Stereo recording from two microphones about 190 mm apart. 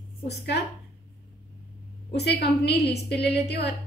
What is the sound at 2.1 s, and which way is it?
A woman's voice, 60° left (ahead or behind).